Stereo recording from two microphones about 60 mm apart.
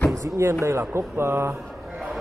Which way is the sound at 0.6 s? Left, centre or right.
Right.